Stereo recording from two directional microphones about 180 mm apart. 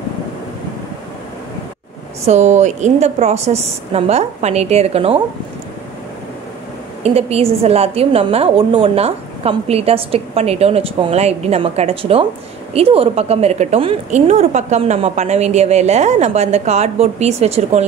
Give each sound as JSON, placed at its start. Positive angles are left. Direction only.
{"t": 2.2, "sound": "a woman's voice", "side_deg": -40}
{"t": 7.0, "sound": "a woman's voice", "side_deg": -35}